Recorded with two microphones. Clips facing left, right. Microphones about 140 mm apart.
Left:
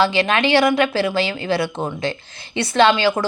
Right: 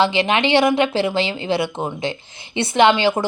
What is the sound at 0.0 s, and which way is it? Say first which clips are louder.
Speech: even; 20° right (ahead or behind).